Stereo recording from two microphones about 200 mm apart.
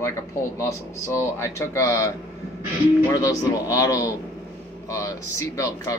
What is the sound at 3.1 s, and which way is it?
Speech, 15° left (ahead or behind).